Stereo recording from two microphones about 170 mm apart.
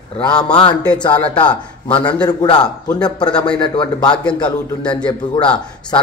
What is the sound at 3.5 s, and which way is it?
Speech, 30° left (ahead or behind).